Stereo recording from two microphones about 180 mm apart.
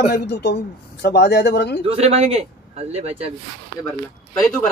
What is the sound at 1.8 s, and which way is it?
Speech, 35° right (ahead or behind).